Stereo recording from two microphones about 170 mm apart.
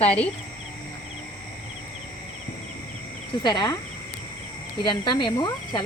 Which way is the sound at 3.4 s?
30° left (ahead or behind).